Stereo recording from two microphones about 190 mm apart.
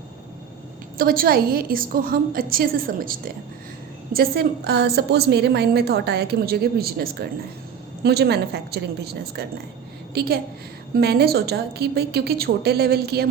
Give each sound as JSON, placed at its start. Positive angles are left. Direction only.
{"t": 0.9, "sound": "a woman's voice", "side_deg": -50}